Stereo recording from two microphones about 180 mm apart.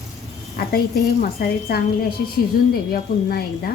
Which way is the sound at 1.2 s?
60° left (ahead or behind).